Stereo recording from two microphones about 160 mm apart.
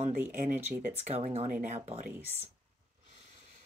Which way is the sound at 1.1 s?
40° right (ahead or behind).